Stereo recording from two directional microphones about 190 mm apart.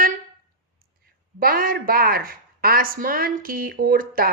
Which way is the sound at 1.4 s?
50° right (ahead or behind).